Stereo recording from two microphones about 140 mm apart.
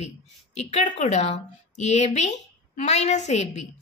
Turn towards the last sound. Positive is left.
turn(degrees=55)  # may be behind; listen again after turning